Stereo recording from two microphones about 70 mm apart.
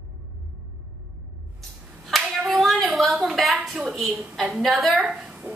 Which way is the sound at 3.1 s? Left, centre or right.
Centre.